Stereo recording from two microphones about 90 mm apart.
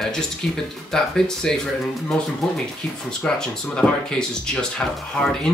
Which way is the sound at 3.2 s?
10° left (ahead or behind).